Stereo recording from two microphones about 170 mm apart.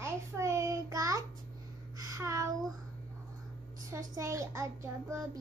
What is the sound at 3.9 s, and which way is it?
A child's voice, 20° right (ahead or behind).